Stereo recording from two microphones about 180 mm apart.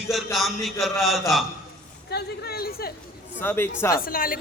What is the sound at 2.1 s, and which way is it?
Speech, 60° left (ahead or behind).